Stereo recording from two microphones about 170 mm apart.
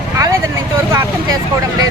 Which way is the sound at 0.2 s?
15° right (ahead or behind).